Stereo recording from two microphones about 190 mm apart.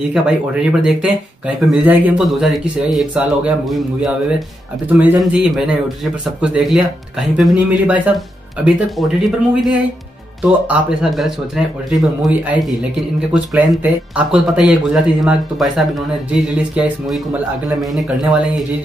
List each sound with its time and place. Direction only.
0.1 s speech: 5° right (ahead or behind)